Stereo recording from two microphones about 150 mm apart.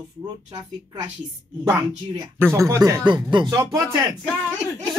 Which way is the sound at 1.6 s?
20° right (ahead or behind).